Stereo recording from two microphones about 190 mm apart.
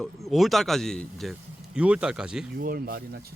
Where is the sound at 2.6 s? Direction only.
50° right (ahead or behind).